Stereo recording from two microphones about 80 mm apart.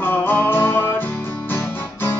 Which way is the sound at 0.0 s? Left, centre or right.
Left.